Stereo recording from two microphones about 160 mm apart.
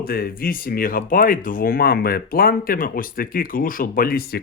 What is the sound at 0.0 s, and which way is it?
Speech, 70° left (ahead or behind).